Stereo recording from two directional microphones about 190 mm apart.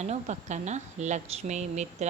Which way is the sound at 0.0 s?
35° right (ahead or behind).